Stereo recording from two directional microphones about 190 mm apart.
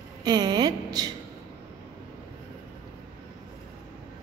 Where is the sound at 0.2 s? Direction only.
20° right (ahead or behind).